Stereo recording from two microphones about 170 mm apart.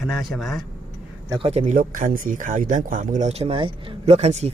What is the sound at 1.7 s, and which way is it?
Speech, 50° right (ahead or behind).